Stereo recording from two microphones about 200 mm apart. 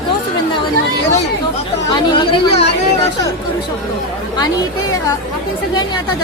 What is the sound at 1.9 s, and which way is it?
Speech, 25° left (ahead or behind).